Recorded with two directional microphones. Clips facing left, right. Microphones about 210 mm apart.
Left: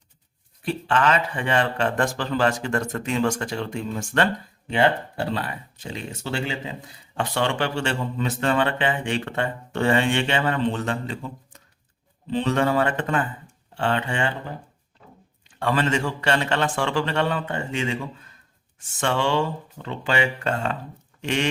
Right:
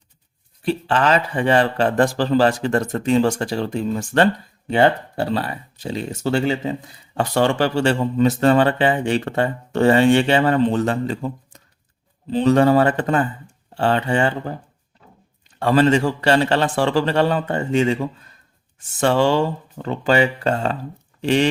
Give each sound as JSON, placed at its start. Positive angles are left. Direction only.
{"t": 0.6, "sound": "speech", "side_deg": -30}